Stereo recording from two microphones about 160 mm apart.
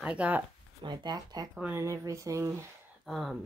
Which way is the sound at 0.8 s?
25° right (ahead or behind).